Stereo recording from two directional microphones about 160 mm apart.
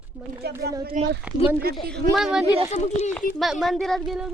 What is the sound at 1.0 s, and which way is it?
Speech, 50° right (ahead or behind).